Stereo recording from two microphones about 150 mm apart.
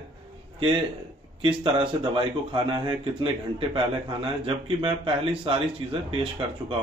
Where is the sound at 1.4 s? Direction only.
35° right (ahead or behind).